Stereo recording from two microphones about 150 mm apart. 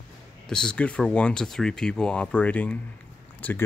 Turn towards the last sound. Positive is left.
turn(degrees=10)  # may be behind; listen again after turning